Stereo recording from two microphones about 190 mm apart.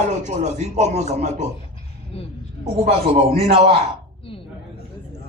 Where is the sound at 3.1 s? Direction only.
30° right (ahead or behind).